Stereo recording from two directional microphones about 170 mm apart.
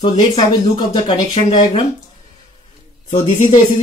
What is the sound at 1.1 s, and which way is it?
Speech, 30° left (ahead or behind).